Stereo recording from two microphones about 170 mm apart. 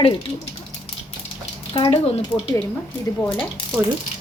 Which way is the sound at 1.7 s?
35° left (ahead or behind).